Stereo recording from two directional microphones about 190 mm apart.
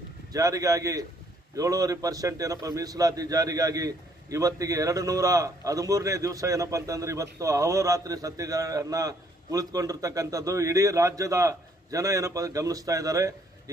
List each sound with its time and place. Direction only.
0.3 s a man's voice: 20° right (ahead or behind)